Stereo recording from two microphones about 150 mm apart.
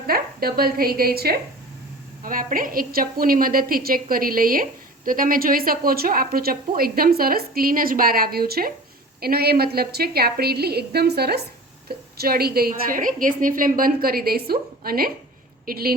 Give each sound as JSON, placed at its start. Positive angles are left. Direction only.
{"t": 0.1, "sound": "a woman's voice", "side_deg": -85}
{"t": 2.2, "sound": "a woman's voice", "side_deg": -65}